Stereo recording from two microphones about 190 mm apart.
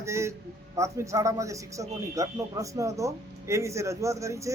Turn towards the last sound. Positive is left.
turn(degrees=-15)  # may be behind; listen again after turning